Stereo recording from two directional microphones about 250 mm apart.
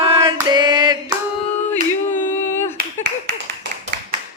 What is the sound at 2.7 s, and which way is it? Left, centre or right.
Clapping, right.